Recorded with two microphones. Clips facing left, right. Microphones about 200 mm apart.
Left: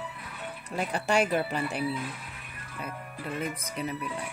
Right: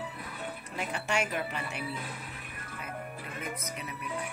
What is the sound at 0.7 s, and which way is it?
Speech, 35° left (ahead or behind).